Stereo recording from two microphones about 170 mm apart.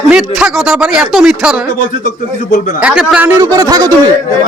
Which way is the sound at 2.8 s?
5° right (ahead or behind).